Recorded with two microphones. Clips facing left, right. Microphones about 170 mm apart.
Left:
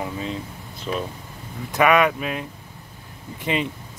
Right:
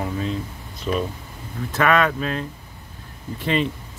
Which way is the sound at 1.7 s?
15° left (ahead or behind).